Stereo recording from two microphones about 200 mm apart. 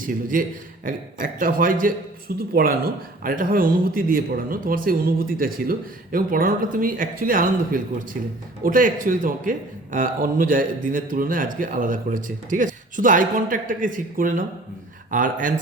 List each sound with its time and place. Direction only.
0.0 s speech: 45° right (ahead or behind)